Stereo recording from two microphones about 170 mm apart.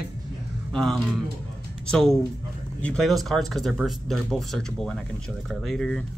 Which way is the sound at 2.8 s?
5° left (ahead or behind).